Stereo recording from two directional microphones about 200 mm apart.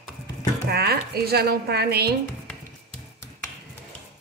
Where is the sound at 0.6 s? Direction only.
50° right (ahead or behind).